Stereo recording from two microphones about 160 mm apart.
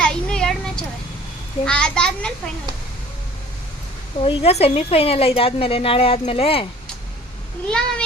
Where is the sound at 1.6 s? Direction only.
5° left (ahead or behind).